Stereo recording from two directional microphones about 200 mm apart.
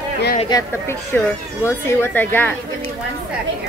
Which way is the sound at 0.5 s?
15° left (ahead or behind).